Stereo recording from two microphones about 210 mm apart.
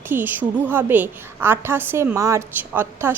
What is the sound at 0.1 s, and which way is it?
A woman's voice, 10° right (ahead or behind).